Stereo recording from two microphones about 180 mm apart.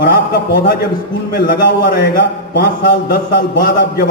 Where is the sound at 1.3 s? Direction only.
60° left (ahead or behind).